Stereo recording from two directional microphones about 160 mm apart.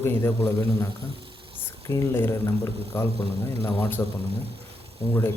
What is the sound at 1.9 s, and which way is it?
Speech, 15° left (ahead or behind).